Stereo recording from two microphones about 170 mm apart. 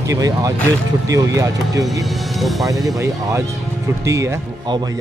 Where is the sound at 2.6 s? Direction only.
20° right (ahead or behind).